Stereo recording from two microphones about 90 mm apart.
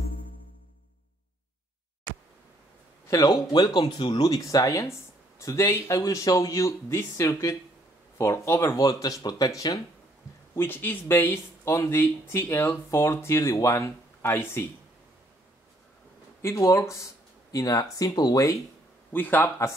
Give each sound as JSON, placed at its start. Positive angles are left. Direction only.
{"t": 3.1, "sound": "speech", "side_deg": 40}
{"t": 3.5, "sound": "speech", "side_deg": 55}
{"t": 8.7, "sound": "speech", "side_deg": 45}
{"t": 10.6, "sound": "speech", "side_deg": 25}
{"t": 16.3, "sound": "speech", "side_deg": 35}
{"t": 17.5, "sound": "speech", "side_deg": 45}
{"t": 19.1, "sound": "speech", "side_deg": 20}